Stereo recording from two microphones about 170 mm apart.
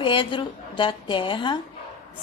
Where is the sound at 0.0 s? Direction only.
30° left (ahead or behind).